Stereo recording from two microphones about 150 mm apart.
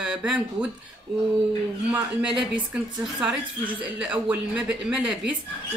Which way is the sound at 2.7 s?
5° right (ahead or behind).